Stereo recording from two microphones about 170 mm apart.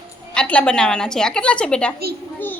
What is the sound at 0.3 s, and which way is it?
A woman's voice, 5° left (ahead or behind).